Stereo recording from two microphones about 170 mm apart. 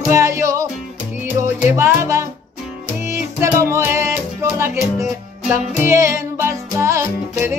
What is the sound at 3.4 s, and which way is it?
Music, 15° right (ahead or behind).